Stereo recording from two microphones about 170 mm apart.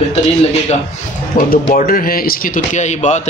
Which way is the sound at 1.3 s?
50° left (ahead or behind).